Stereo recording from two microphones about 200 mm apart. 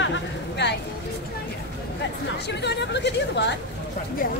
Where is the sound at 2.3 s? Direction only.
55° left (ahead or behind).